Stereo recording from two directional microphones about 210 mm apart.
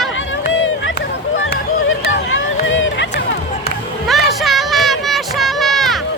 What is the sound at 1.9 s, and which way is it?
Hubbub, 70° left (ahead or behind).